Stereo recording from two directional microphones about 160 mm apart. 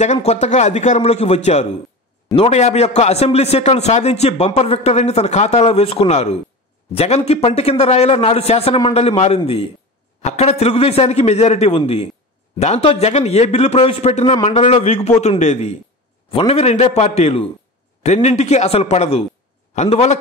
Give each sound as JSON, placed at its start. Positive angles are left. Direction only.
{"t": 0.0, "sound": "a man's voice", "side_deg": 40}